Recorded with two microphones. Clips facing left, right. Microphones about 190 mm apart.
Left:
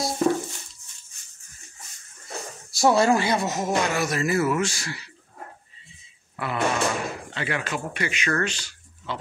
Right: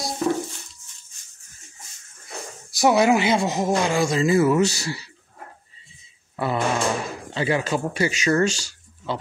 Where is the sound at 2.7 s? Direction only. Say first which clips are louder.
Right 2 dB; 15° right (ahead or behind).